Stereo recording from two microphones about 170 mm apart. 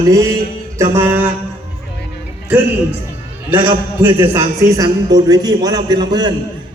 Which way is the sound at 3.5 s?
25° right (ahead or behind).